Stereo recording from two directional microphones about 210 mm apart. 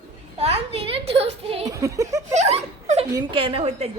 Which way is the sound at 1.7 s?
15° right (ahead or behind).